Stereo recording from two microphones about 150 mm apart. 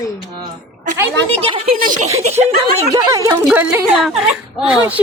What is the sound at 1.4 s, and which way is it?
Speech, 40° right (ahead or behind).